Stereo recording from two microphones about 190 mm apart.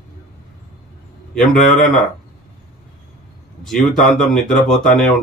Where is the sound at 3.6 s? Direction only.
Centre (ahead or behind).